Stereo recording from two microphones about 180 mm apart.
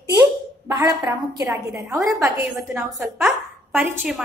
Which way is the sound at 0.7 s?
20° right (ahead or behind).